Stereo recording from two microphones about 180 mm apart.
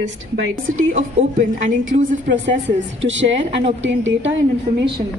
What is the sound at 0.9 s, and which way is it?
Speech, 45° right (ahead or behind).